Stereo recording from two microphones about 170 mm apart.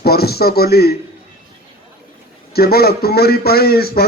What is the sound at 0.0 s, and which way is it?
Speech, 65° left (ahead or behind).